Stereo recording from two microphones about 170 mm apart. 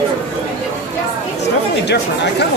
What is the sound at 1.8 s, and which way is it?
Speech, 85° left.